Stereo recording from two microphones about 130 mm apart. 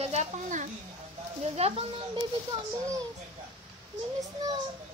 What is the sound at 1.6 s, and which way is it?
Speech, 55° right (ahead or behind).